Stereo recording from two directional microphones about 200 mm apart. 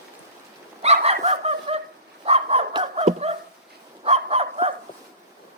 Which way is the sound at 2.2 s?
30° right (ahead or behind).